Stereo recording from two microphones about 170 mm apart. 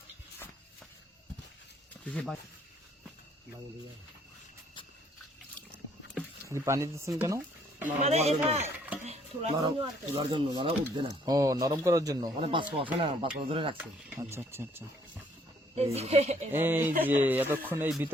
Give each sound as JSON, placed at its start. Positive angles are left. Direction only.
{"t": 2.0, "sound": "speech", "side_deg": 10}
{"t": 6.5, "sound": "speech", "side_deg": -15}
{"t": 8.0, "sound": "speech", "side_deg": -40}
{"t": 14.2, "sound": "speech", "side_deg": -15}
{"t": 15.7, "sound": "speech", "side_deg": -35}
{"t": 16.5, "sound": "speech", "side_deg": -10}